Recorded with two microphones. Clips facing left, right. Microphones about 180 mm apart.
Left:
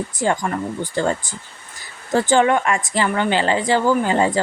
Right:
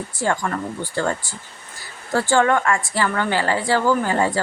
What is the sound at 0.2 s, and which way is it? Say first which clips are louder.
A woman's voice: left 1 dB; 15° left (ahead or behind).